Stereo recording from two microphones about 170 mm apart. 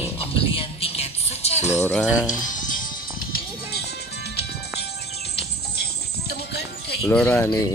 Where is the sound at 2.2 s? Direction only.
50° left (ahead or behind); by 6.9 s 75° left (ahead or behind).